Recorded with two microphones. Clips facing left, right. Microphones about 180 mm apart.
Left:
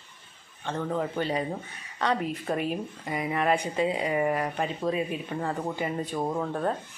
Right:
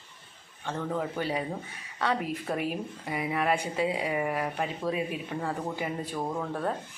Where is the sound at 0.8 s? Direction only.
5° left (ahead or behind).